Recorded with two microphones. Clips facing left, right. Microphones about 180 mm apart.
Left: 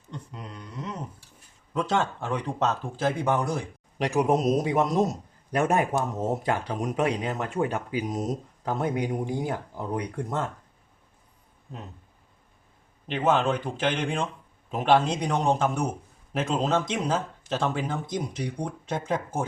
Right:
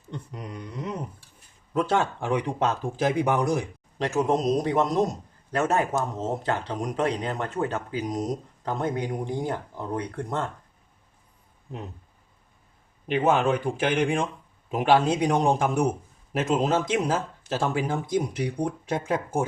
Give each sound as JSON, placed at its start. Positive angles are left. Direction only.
{"t": 0.5, "sound": "speech", "side_deg": -15}
{"t": 3.9, "sound": "a man's voice", "side_deg": 15}
{"t": 13.1, "sound": "speech", "side_deg": -10}